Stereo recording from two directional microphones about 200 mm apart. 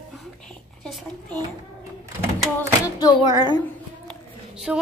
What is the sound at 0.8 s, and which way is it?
Speech, centre (ahead or behind).